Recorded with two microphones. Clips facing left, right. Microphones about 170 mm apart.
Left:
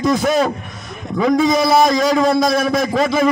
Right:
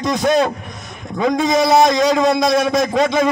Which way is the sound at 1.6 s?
20° right (ahead or behind).